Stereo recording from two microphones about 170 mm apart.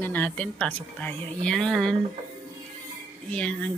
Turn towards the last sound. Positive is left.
turn(degrees=5)  # may be behind; listen again after turning